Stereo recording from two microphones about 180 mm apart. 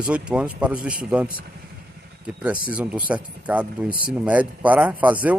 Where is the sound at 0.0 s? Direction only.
5° right (ahead or behind).